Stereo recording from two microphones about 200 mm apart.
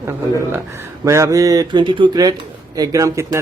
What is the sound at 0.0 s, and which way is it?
Speech, 15° right (ahead or behind).